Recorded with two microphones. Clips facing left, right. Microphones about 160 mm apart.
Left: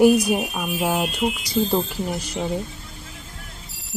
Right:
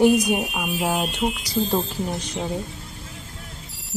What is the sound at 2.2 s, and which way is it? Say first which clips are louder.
Speech: left 1 dB; 5° left (ahead or behind).